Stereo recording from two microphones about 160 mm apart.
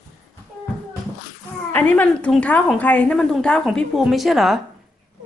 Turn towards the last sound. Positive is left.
turn(degrees=0)  # may be behind; listen again after turning